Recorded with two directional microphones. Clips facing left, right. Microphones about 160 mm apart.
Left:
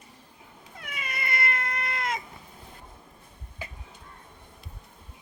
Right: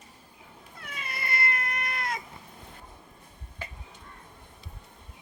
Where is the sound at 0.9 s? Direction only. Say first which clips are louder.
Left 1 dB; 15° left (ahead or behind).